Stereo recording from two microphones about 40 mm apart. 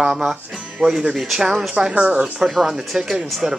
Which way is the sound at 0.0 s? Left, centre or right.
Centre.